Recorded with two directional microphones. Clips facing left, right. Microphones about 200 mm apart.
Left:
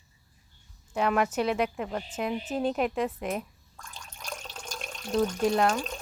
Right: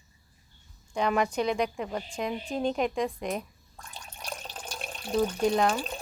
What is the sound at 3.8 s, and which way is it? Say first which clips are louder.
Water: right 1 dB; 35° right (ahead or behind).